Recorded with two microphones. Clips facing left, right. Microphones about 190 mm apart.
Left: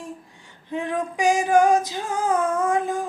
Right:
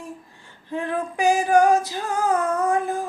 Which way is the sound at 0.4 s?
15° left (ahead or behind).